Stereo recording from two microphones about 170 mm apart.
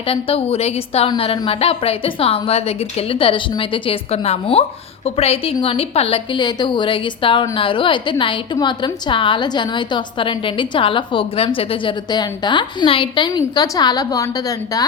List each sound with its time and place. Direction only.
0.1 s a woman's voice: 35° left (ahead or behind)